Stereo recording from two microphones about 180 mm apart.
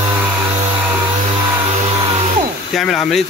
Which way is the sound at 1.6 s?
25° right (ahead or behind).